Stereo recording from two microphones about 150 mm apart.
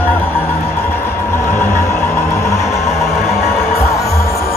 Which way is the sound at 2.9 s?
Centre (ahead or behind).